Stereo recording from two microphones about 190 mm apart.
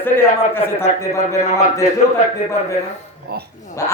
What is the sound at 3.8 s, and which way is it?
Speech, 15° left (ahead or behind).